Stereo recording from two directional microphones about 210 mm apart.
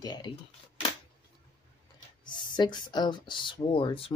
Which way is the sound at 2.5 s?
20° left (ahead or behind).